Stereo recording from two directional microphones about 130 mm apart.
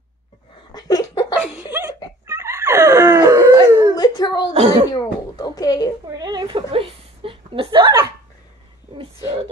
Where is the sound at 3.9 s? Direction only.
30° left (ahead or behind).